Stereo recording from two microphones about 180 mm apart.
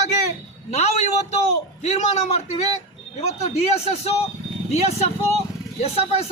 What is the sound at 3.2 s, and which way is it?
Speech, 35° left (ahead or behind).